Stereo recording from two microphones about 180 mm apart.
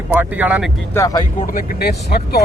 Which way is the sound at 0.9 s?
20° left (ahead or behind).